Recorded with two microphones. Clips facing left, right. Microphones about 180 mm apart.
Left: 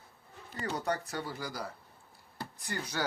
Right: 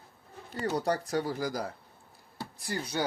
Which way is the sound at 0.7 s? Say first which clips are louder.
Right 5 dB; 35° right (ahead or behind).